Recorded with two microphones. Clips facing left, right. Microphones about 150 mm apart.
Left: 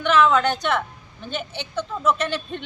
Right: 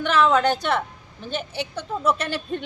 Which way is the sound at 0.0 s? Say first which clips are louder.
Left 1 dB; 35° right (ahead or behind).